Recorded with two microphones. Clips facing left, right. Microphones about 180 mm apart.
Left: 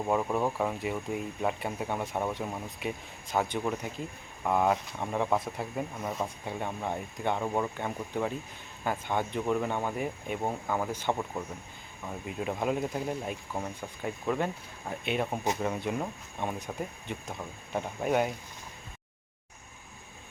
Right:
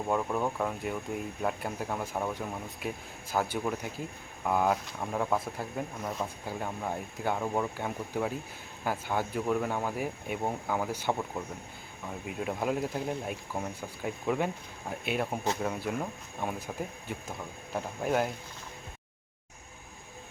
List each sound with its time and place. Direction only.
0.1 s speech: 5° left (ahead or behind)